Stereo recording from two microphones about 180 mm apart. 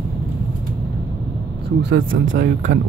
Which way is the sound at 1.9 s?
90° right.